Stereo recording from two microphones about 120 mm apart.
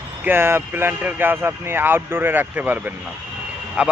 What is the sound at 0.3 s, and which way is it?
Speech, 20° right (ahead or behind).